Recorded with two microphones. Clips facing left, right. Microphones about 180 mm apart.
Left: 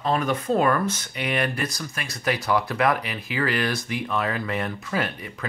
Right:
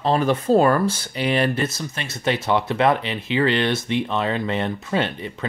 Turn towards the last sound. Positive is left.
turn(degrees=-25)  # may be behind; listen again after turning